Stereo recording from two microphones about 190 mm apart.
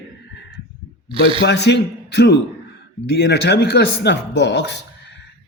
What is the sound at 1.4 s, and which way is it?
A man's voice, 65° left (ahead or behind).